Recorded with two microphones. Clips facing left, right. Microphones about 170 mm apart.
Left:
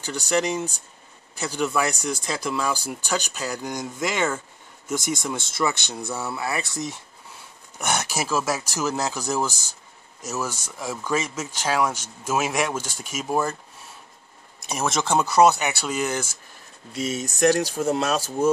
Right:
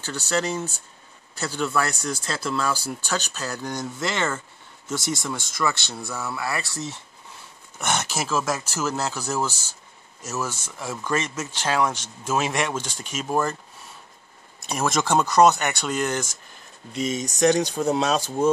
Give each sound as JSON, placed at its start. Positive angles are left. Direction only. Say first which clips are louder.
{"t": 0.0, "sound": "speech", "louder": "left 2 dB", "side_deg": 15}
{"t": 14.7, "sound": "speech", "louder": "right 1 dB", "side_deg": 0}